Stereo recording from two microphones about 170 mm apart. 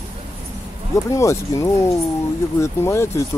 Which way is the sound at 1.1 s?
20° left (ahead or behind).